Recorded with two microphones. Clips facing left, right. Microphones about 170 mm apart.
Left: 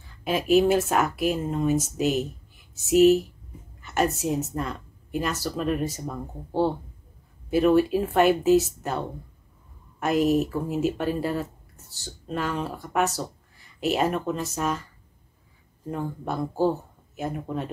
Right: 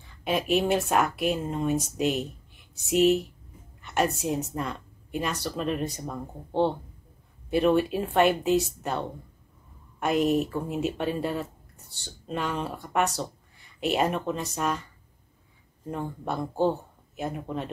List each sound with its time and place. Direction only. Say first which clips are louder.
0.0 s speech: left 1 dB; centre (ahead or behind)